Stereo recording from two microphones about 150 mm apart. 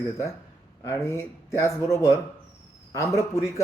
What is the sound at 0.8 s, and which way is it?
Speech, 20° left (ahead or behind).